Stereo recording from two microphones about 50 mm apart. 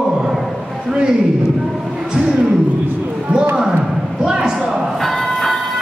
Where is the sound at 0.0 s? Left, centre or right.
Centre.